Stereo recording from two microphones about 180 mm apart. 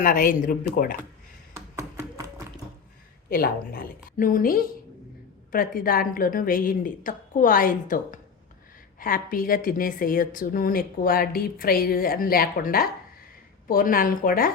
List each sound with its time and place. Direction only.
0.0 s a woman's voice: 50° left (ahead or behind)
1.5 s a sound: 15° right (ahead or behind)
3.2 s a woman's voice: 55° left (ahead or behind)